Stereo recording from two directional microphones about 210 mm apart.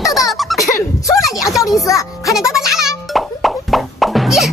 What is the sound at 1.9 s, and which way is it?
Speech, 15° left (ahead or behind).